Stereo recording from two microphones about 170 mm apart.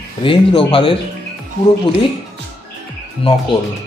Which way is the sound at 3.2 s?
35° left (ahead or behind).